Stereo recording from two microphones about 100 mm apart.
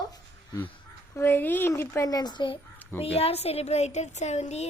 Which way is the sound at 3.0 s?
90° left.